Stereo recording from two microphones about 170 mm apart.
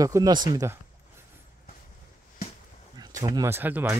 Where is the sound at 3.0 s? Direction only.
20° right (ahead or behind).